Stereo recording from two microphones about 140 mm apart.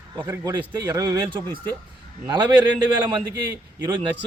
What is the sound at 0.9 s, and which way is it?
A man's voice, 25° right (ahead or behind).